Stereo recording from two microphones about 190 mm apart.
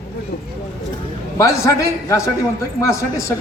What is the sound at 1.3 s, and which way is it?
A man's voice, 15° left (ahead or behind).